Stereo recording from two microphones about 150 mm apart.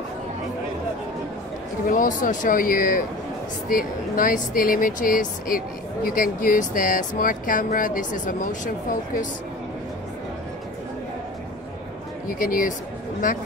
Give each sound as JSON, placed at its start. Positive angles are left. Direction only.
{"t": 1.9, "sound": "speech", "side_deg": 60}
{"t": 12.3, "sound": "speech", "side_deg": 65}